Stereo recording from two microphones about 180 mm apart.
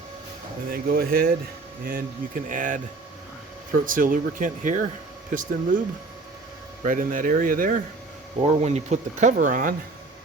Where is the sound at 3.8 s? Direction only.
50° right (ahead or behind).